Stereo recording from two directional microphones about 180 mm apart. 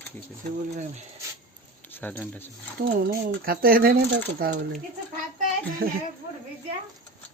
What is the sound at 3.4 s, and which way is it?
Speech, 55° right (ahead or behind).